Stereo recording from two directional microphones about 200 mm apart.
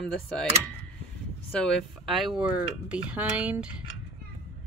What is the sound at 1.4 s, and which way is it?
Speech, 5° left (ahead or behind).